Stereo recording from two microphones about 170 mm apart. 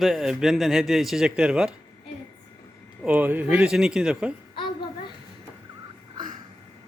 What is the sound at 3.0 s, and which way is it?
A man's voice, 10° right (ahead or behind).